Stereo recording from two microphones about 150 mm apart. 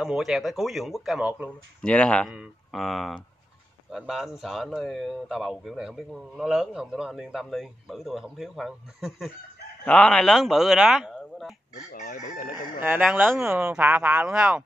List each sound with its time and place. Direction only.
0.0 s speech: 5° right (ahead or behind)
1.8 s speech: 5° left (ahead or behind)
11.9 s chicken: 55° left (ahead or behind)
12.8 s speech: 15° right (ahead or behind)